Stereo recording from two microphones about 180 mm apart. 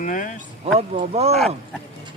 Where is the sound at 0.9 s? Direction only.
35° right (ahead or behind).